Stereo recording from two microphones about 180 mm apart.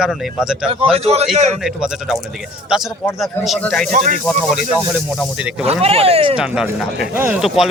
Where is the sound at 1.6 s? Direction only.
5° right (ahead or behind).